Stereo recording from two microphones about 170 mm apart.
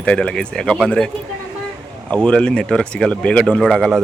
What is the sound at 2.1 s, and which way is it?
Speech, 5° left (ahead or behind).